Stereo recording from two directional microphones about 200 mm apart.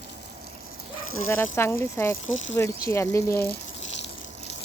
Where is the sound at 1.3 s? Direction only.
10° left (ahead or behind).